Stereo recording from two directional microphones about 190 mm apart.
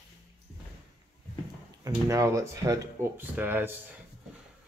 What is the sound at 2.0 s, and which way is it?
Speech, 15° right (ahead or behind).